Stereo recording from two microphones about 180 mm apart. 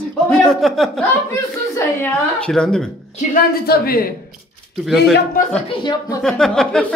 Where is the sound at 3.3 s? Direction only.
60° left (ahead or behind).